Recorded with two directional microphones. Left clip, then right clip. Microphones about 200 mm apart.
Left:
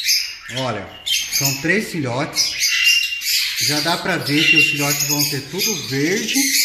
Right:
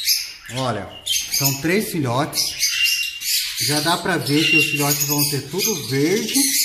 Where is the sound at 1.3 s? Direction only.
Centre (ahead or behind).